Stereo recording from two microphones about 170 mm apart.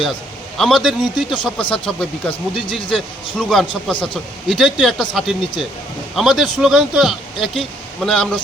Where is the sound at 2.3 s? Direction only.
30° left (ahead or behind).